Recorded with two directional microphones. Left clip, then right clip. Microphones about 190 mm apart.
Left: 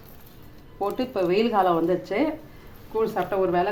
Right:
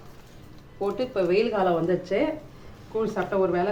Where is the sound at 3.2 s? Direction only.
45° left (ahead or behind).